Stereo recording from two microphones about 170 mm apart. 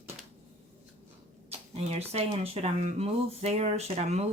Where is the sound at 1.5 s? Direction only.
35° right (ahead or behind).